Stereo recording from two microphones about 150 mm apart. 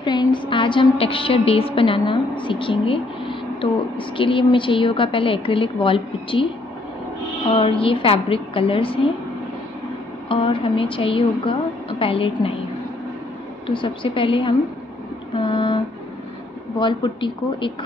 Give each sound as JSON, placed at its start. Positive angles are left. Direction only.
{"t": 0.0, "sound": "a woman's voice", "side_deg": 30}
{"t": 7.4, "sound": "a woman's voice", "side_deg": 40}
{"t": 10.2, "sound": "a woman's voice", "side_deg": 35}
{"t": 13.7, "sound": "a woman's voice", "side_deg": 35}
{"t": 15.3, "sound": "a sound", "side_deg": 35}
{"t": 16.8, "sound": "a woman's voice", "side_deg": 30}